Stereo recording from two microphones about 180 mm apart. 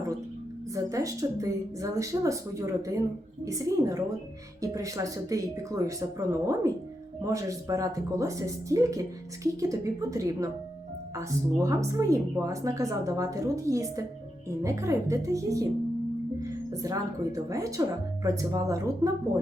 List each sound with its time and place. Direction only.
0.7 s speech: 20° right (ahead or behind)